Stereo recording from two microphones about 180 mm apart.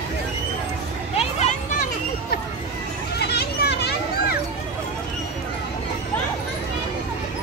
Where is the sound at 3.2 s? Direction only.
65° left (ahead or behind).